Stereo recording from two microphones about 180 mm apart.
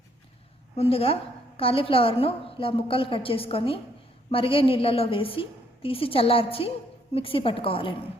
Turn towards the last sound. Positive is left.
turn(degrees=30)  # may be behind; listen again after turning